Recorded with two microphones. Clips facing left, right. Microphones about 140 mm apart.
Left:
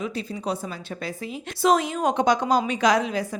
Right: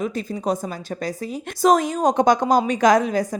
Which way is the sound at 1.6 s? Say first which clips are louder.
Right 4 dB; 45° right (ahead or behind).